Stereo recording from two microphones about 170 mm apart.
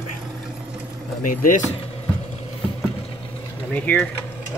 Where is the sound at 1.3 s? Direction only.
55° left (ahead or behind).